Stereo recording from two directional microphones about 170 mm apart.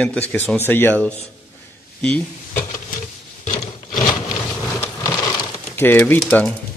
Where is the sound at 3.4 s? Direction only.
50° left (ahead or behind).